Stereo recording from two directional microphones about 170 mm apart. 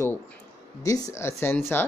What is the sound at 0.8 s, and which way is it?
Speech, 20° left (ahead or behind).